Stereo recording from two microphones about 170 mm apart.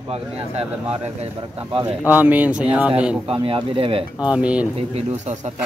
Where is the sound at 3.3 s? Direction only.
30° right (ahead or behind).